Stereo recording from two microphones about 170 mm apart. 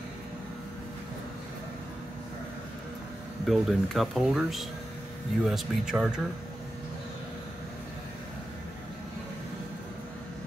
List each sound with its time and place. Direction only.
3.4 s speech: centre (ahead or behind)